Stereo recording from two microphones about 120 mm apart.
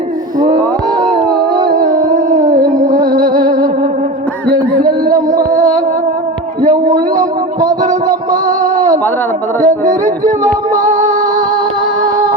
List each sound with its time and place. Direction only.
1.3 s howl: 40° right (ahead or behind)
1.7 s howl: 90° right
5.5 s music: 30° right (ahead or behind)
6.9 s a sound: 30° right (ahead or behind)
7.9 s a sound: 90° right
10.8 s music: 90° right